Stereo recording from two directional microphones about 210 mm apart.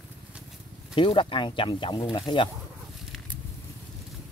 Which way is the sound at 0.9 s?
25° left (ahead or behind).